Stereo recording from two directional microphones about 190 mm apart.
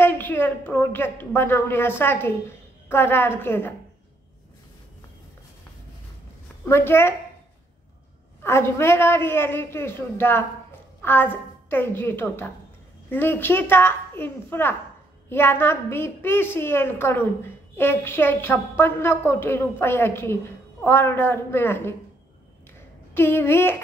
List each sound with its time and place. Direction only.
0.0 s a woman's voice: 10° left (ahead or behind)
6.6 s a woman's voice: 10° left (ahead or behind)
8.4 s a woman's voice: 15° left (ahead or behind)
23.1 s a woman's voice: 10° left (ahead or behind)